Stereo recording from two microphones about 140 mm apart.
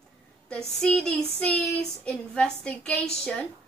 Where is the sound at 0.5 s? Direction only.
5° left (ahead or behind).